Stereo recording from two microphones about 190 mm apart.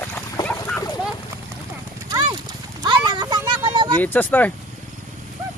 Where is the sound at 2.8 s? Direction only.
20° right (ahead or behind).